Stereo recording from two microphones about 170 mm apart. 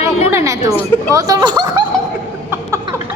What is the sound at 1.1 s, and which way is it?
Speech, 20° right (ahead or behind).